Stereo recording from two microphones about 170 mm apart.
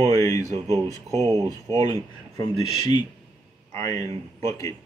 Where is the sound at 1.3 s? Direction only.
20° right (ahead or behind).